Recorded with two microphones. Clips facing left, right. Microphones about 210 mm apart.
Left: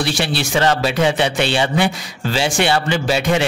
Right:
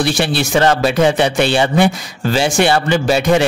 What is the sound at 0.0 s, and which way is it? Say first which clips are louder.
Speech: right 4 dB; 50° right (ahead or behind).